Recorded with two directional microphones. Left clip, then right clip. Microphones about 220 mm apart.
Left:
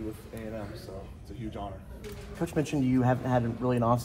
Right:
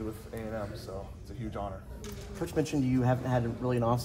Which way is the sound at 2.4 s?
25° left (ahead or behind).